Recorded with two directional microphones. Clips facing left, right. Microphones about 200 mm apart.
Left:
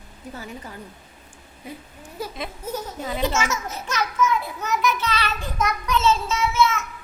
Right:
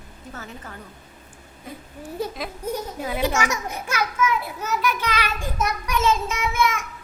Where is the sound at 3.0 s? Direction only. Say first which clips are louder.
Even; 10° right (ahead or behind).